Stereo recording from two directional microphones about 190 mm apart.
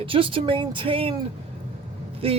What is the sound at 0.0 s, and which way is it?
Speech, 30° right (ahead or behind).